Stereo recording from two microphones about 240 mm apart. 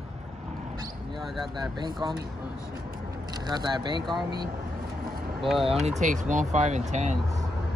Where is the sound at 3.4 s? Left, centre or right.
Centre.